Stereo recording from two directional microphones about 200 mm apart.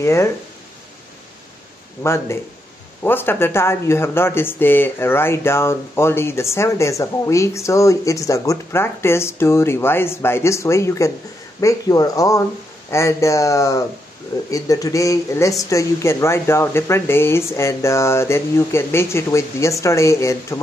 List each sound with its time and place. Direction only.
0.0 s speech: 15° left (ahead or behind)
2.0 s speech: 15° left (ahead or behind)